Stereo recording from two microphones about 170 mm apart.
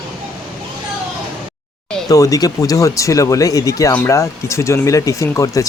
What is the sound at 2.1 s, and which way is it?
Speech, 20° left (ahead or behind).